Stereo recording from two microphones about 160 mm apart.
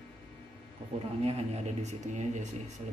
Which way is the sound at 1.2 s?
40° right (ahead or behind).